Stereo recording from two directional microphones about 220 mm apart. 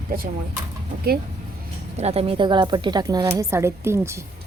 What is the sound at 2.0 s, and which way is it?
A woman's voice, 25° right (ahead or behind).